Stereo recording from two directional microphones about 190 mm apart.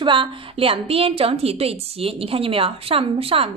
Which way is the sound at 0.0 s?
25° right (ahead or behind).